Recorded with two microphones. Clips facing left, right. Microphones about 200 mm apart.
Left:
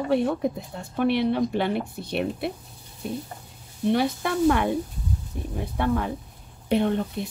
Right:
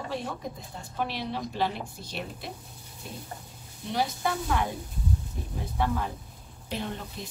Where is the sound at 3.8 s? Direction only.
60° left (ahead or behind).